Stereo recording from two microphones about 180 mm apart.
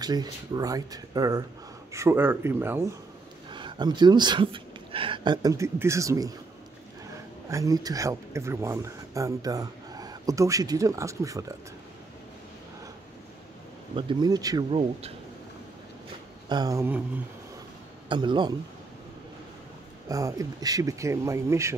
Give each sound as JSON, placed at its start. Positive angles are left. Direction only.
{"t": 0.0, "sound": "speech", "side_deg": -20}
{"t": 3.5, "sound": "speech", "side_deg": -25}
{"t": 7.4, "sound": "speech", "side_deg": -15}
{"t": 13.9, "sound": "speech", "side_deg": -25}
{"t": 14.7, "sound": "speech", "side_deg": -35}
{"t": 16.4, "sound": "speech", "side_deg": -20}
{"t": 18.0, "sound": "speech", "side_deg": -25}
{"t": 20.1, "sound": "speech", "side_deg": -20}